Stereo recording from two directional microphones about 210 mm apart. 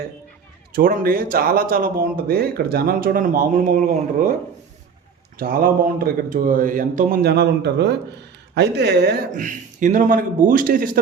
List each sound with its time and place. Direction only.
0.7 s speech: 45° right (ahead or behind)
5.4 s speech: 45° right (ahead or behind)
9.3 s a man's voice: 35° right (ahead or behind)